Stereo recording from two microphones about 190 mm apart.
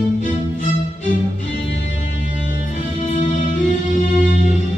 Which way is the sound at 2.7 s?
40° left (ahead or behind).